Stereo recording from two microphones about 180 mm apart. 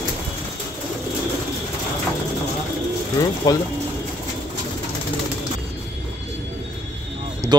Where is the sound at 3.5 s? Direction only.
20° left (ahead or behind).